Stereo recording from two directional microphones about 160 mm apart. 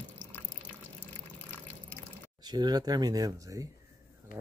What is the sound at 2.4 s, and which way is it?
Speech, 25° right (ahead or behind).